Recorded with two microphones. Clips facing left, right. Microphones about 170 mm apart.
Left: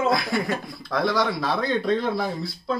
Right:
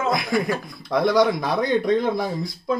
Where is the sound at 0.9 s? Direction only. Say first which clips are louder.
Right 5 dB; 20° right (ahead or behind).